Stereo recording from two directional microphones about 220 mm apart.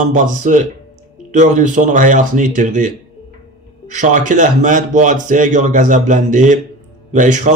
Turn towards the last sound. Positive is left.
turn(degrees=-35)  # may be behind; listen again after turning